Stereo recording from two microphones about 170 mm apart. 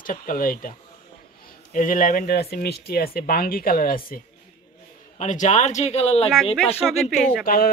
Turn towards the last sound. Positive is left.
turn(degrees=60)  # may be behind; listen again after turning